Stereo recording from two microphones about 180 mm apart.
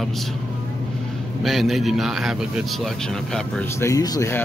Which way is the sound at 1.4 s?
Centre (ahead or behind).